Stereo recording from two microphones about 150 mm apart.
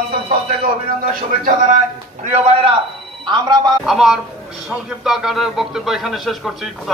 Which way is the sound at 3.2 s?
30° right (ahead or behind).